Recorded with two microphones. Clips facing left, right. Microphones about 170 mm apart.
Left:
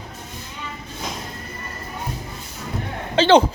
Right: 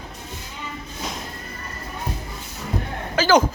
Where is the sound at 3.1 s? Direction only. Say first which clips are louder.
Left 3 dB; 30° left (ahead or behind).